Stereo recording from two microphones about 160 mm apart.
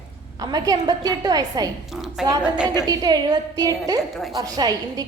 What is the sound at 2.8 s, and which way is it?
A woman's voice, 25° right (ahead or behind).